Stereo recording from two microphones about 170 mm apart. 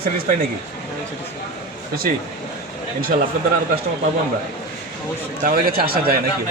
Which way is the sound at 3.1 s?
45° right (ahead or behind).